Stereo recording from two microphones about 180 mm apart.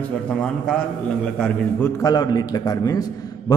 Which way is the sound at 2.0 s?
25° left (ahead or behind).